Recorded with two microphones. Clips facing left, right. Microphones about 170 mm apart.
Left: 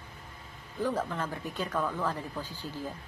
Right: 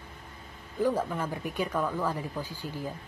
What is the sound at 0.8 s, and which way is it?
Speech, 10° right (ahead or behind).